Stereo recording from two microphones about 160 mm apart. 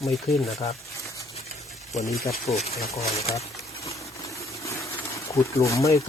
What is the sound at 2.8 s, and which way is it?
Speech, 20° left (ahead or behind).